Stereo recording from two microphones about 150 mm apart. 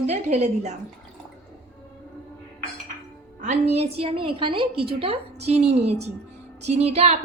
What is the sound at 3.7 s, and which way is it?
A woman's voice, 40° right (ahead or behind).